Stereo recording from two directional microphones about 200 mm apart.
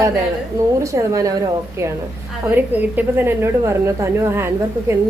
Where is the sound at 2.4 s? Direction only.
10° right (ahead or behind).